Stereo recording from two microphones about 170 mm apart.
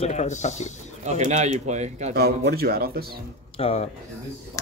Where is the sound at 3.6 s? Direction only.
35° left (ahead or behind).